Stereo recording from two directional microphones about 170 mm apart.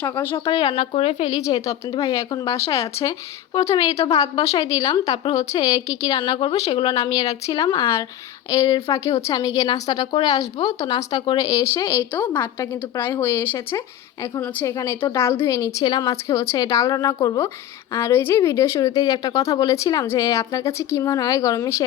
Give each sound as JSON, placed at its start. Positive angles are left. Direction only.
{"t": 0.0, "sound": "speech", "side_deg": 15}
{"t": 0.4, "sound": "speech", "side_deg": 30}
{"t": 5.3, "sound": "speech", "side_deg": 20}